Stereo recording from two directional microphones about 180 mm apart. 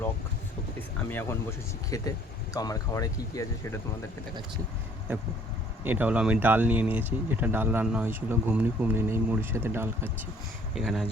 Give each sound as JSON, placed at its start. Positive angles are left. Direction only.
{"t": 1.9, "sound": "speech", "side_deg": 20}
{"t": 5.8, "sound": "speech", "side_deg": -10}
{"t": 10.8, "sound": "speech", "side_deg": 0}